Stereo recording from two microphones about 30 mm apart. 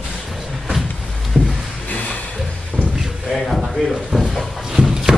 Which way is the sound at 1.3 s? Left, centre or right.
Right.